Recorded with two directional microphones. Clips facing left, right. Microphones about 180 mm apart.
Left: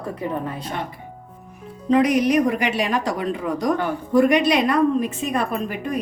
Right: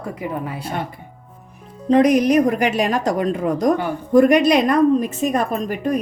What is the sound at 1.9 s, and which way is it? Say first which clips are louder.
A woman's voice: right 3 dB; 40° right (ahead or behind).